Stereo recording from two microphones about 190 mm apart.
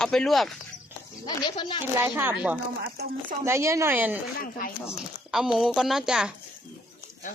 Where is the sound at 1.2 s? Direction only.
25° left (ahead or behind).